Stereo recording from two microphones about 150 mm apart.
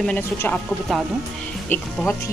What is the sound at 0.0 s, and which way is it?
Speech, 10° left (ahead or behind).